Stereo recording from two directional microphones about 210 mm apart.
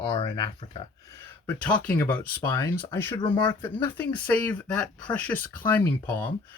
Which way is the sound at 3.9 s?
10° left (ahead or behind).